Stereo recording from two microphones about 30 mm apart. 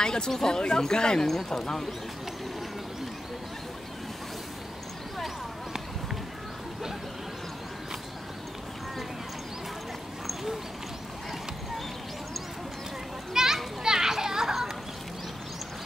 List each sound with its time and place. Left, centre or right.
0.0 s speech: left
1.2 s speech: centre
13.3 s children playing: centre